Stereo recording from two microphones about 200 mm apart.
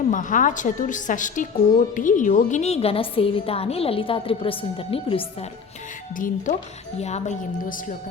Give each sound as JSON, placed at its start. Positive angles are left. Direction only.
{"t": 0.1, "sound": "a woman's voice", "side_deg": 40}
{"t": 6.1, "sound": "a woman's voice", "side_deg": 40}